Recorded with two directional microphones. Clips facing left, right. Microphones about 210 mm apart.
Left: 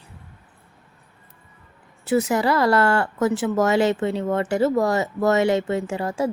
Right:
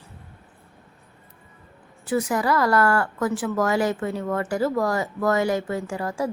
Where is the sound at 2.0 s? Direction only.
25° left (ahead or behind).